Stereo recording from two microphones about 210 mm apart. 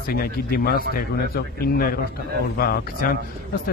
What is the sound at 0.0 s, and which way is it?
Speech, 45° left (ahead or behind).